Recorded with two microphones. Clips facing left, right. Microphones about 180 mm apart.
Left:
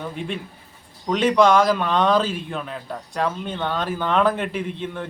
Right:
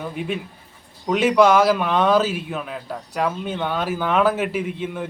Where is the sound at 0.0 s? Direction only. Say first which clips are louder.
Right 2 dB; 5° right (ahead or behind).